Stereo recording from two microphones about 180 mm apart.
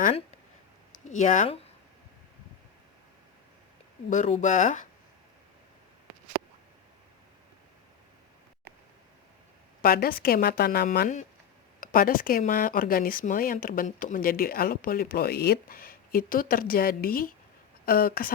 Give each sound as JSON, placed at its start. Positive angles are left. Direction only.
{"t": 0.9, "sound": "speech", "side_deg": 45}
{"t": 4.1, "sound": "speech", "side_deg": 45}
{"t": 9.8, "sound": "a woman's voice", "side_deg": 55}